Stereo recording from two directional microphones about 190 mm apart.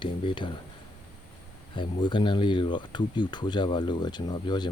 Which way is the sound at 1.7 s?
25° left (ahead or behind).